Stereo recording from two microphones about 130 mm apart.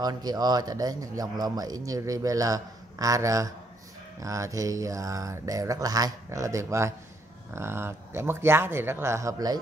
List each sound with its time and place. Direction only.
0.0 s a man's voice: 30° right (ahead or behind)